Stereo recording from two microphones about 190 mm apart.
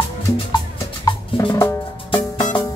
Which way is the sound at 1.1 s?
15° left (ahead or behind).